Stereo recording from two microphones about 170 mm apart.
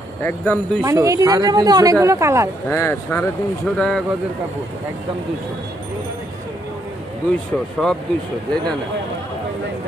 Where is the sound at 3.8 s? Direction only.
5° left (ahead or behind).